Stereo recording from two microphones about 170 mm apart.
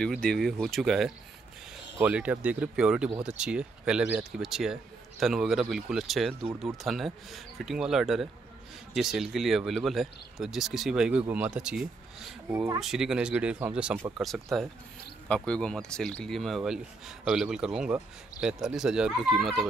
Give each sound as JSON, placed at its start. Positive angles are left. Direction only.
{"t": 0.0, "sound": "speech", "side_deg": 5}
{"t": 12.5, "sound": "speech", "side_deg": -15}
{"t": 12.8, "sound": "speech", "side_deg": -5}